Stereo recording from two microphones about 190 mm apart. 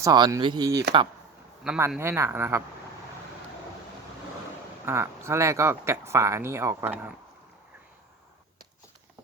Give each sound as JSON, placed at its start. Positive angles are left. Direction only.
{"t": 0.0, "sound": "speech", "side_deg": -20}
{"t": 1.6, "sound": "speech", "side_deg": -5}
{"t": 4.9, "sound": "speech", "side_deg": -15}